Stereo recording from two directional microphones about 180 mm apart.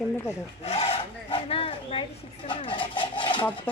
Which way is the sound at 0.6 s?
35° left (ahead or behind).